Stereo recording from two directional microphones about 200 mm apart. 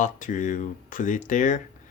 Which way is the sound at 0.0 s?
40° left (ahead or behind).